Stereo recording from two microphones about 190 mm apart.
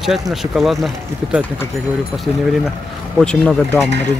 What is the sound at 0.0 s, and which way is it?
Speech, centre (ahead or behind).